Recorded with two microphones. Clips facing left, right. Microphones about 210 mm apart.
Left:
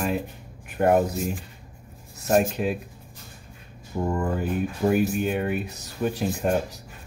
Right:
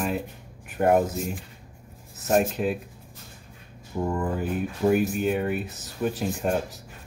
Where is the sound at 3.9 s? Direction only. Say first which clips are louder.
Left 1 dB; centre (ahead or behind).